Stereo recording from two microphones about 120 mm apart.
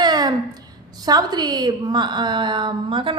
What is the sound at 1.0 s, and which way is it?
A woman's voice, 35° right (ahead or behind).